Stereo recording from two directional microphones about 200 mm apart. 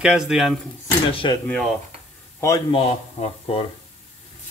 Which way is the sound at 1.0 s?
25° left (ahead or behind).